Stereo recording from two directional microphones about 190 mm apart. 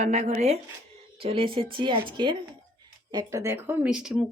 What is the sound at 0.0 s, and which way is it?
A woman's voice, 35° right (ahead or behind).